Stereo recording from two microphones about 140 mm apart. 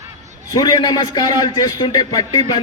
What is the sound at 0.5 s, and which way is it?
A man's voice, 30° left (ahead or behind).